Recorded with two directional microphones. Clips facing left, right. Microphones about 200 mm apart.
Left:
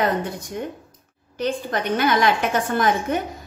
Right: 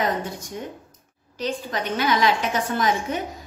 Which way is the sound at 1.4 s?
55° left (ahead or behind).